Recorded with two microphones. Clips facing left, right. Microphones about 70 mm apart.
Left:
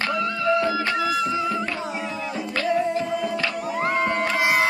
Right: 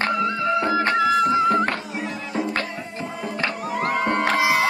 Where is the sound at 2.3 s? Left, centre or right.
Right.